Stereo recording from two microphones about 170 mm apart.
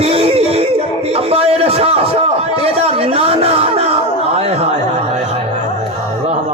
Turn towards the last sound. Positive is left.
turn(degrees=-40)  # may be behind; listen again after turning